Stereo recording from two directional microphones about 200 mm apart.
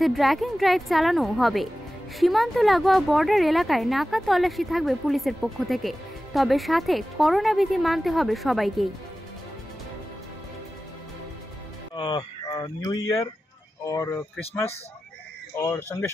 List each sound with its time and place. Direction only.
0.0 s speech: centre (ahead or behind)
11.9 s speech: 25° left (ahead or behind)
15.5 s speech: 15° left (ahead or behind)